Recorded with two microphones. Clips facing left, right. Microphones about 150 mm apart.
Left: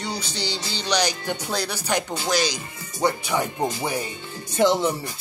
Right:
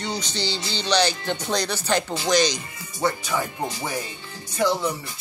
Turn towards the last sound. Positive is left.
turn(degrees=25)  # may be behind; listen again after turning